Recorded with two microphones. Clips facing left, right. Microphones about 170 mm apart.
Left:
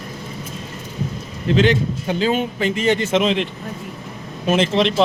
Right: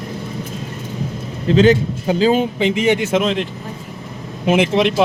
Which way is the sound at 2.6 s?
15° right (ahead or behind).